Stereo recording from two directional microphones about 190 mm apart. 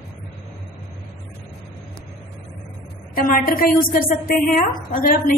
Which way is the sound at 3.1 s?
50° left (ahead or behind).